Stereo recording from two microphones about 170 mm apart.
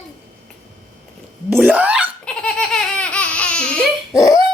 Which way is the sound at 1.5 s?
10° right (ahead or behind).